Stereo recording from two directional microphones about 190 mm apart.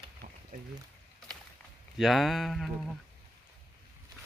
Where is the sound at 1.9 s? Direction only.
Centre (ahead or behind).